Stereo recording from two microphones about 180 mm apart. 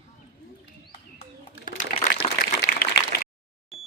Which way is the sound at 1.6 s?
45° left (ahead or behind).